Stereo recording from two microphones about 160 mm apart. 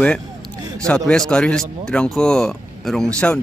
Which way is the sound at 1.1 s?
5° left (ahead or behind).